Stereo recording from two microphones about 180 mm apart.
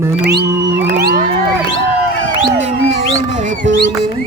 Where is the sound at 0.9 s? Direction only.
65° right (ahead or behind).